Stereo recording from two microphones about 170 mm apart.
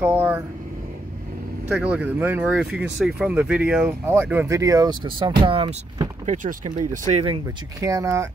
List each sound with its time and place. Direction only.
0.0 s speech: 10° right (ahead or behind)
1.7 s speech: 10° right (ahead or behind); by 7.3 s 40° right (ahead or behind)
7.8 s speech: 20° right (ahead or behind)